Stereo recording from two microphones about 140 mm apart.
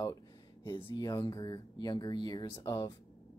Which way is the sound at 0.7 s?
35° left (ahead or behind).